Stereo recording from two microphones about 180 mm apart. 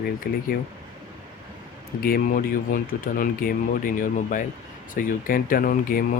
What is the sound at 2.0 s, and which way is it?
Speech, 55° left (ahead or behind).